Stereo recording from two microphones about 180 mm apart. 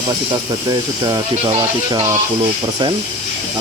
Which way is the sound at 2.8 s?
25° right (ahead or behind).